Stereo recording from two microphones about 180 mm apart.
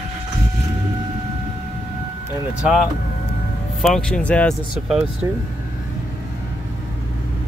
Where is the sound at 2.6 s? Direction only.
5° right (ahead or behind).